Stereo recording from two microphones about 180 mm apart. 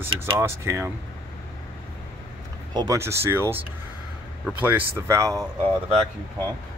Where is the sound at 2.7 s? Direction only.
20° right (ahead or behind).